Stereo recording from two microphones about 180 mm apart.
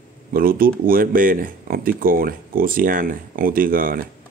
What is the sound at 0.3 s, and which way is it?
Speech, 50° right (ahead or behind).